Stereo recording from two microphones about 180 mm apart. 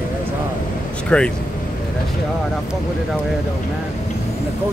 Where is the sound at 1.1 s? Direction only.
5° left (ahead or behind).